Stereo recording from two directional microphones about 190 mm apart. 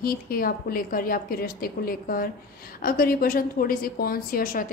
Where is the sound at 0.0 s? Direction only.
50° left (ahead or behind).